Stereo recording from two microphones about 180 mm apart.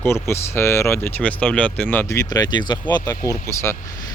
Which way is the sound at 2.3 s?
20° left (ahead or behind).